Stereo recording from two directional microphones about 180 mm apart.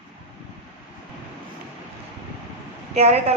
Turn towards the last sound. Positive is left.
turn(degrees=-35)  # may be behind; listen again after turning